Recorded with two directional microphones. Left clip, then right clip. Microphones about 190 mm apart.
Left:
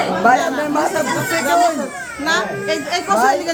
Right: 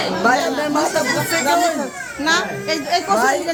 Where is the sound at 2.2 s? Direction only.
35° right (ahead or behind).